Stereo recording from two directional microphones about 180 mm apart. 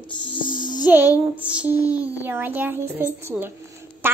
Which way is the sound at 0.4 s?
50° left (ahead or behind).